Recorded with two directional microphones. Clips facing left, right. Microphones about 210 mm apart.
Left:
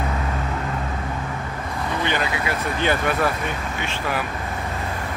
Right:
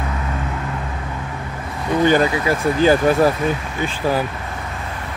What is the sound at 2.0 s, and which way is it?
Speech, 40° right (ahead or behind).